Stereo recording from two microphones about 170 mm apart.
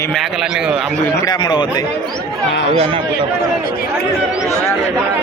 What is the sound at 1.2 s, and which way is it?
Speech, 25° left (ahead or behind).